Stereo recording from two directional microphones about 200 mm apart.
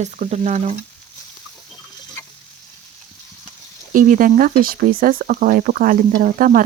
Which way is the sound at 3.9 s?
40° right (ahead or behind).